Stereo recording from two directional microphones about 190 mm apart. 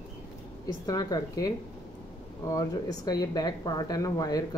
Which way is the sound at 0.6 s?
20° left (ahead or behind).